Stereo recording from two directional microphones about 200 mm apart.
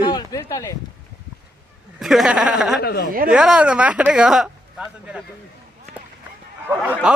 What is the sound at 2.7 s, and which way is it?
Speech, 55° left (ahead or behind).